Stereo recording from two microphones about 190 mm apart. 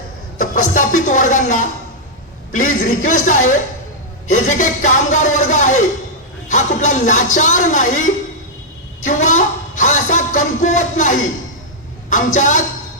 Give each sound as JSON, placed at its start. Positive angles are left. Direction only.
{"t": 0.3, "sound": "speech", "side_deg": 40}
{"t": 9.0, "sound": "speech", "side_deg": 40}
{"t": 12.1, "sound": "speech", "side_deg": 40}